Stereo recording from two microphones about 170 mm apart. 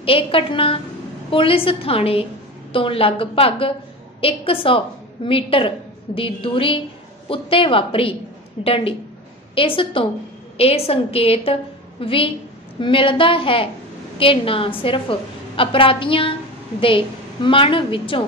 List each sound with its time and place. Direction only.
0.0 s a woman's voice: 35° left (ahead or behind)